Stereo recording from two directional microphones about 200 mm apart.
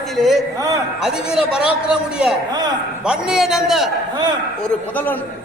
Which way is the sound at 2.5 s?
20° right (ahead or behind).